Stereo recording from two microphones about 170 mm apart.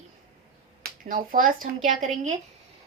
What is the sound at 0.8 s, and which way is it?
A woman's voice, 55° right (ahead or behind).